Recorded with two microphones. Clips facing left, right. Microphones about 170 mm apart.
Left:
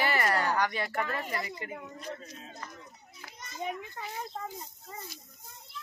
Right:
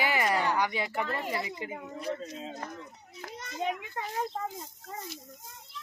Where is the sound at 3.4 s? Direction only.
70° right (ahead or behind).